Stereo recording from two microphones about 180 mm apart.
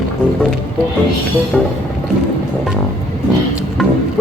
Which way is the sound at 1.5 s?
Centre (ahead or behind).